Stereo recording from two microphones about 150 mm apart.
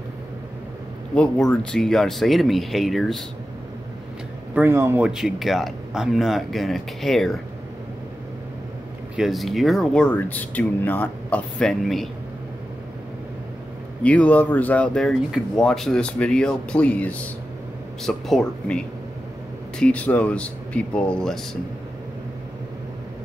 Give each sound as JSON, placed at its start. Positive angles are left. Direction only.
{"t": 1.1, "sound": "speech", "side_deg": 5}
{"t": 4.6, "sound": "speech", "side_deg": -15}
{"t": 5.0, "sound": "speech", "side_deg": 0}
{"t": 9.1, "sound": "speech", "side_deg": 0}
{"t": 14.0, "sound": "speech", "side_deg": 10}
{"t": 19.8, "sound": "speech", "side_deg": 10}